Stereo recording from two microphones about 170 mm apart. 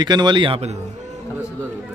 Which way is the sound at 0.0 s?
25° right (ahead or behind).